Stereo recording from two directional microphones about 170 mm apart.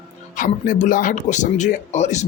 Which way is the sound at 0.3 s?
50° left (ahead or behind).